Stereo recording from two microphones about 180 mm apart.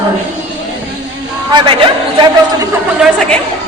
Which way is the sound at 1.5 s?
30° right (ahead or behind).